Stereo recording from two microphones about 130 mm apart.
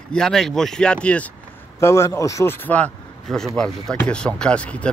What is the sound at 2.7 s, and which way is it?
Speech, 5° left (ahead or behind).